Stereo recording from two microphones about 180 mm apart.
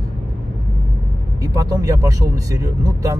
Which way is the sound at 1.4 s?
20° right (ahead or behind).